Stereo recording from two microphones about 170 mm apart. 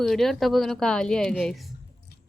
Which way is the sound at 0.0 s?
Centre (ahead or behind).